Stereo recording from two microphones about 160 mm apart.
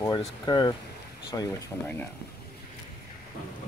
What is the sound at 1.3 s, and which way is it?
Speech, 15° left (ahead or behind).